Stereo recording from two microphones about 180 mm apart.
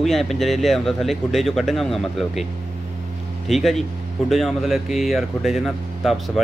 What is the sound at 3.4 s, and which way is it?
Speech, centre (ahead or behind).